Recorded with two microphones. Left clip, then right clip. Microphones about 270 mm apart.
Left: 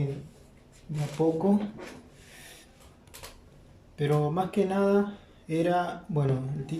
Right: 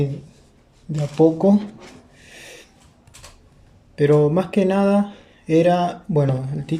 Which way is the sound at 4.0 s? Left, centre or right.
Right.